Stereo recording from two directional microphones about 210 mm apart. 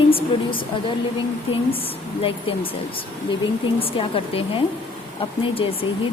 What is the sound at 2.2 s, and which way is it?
Speech, 25° left (ahead or behind).